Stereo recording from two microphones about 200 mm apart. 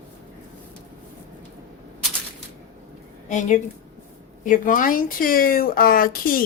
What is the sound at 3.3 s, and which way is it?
Speech, 40° left (ahead or behind).